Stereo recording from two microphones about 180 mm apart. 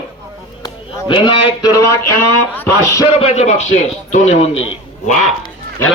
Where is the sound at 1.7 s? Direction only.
15° left (ahead or behind).